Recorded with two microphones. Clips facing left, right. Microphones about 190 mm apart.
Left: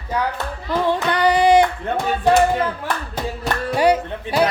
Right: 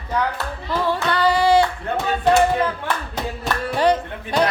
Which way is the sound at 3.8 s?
10° left (ahead or behind).